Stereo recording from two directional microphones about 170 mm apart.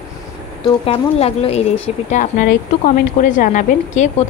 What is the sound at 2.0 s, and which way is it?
Speech, 50° left (ahead or behind).